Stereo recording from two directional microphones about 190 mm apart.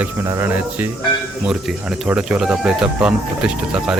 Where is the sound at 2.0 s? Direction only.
5° right (ahead or behind).